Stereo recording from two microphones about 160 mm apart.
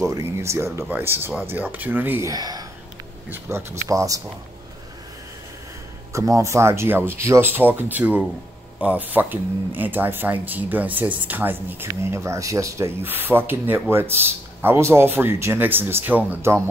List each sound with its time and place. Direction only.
0.0 s speech: 20° right (ahead or behind)
6.1 s speech: 20° right (ahead or behind)